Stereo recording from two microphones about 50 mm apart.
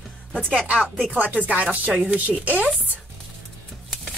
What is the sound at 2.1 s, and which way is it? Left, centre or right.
Speech, right.